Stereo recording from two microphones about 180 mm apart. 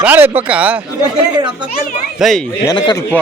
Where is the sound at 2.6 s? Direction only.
20° left (ahead or behind).